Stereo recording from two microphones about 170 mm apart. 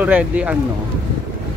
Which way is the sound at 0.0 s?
10° right (ahead or behind).